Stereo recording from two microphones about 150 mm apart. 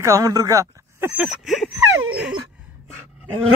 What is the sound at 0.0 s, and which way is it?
Speech, 20° right (ahead or behind).